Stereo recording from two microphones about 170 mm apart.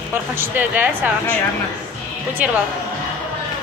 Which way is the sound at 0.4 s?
10° right (ahead or behind).